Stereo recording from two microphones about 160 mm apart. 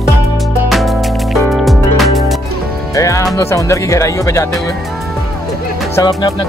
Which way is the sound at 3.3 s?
20° left (ahead or behind).